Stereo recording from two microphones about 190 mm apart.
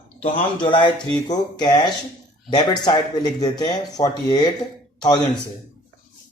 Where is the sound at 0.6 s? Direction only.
25° left (ahead or behind).